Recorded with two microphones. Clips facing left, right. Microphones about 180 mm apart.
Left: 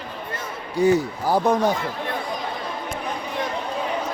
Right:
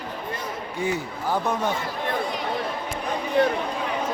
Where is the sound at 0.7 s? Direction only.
35° left (ahead or behind).